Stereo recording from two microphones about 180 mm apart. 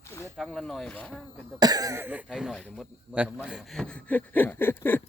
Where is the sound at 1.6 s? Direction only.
20° right (ahead or behind).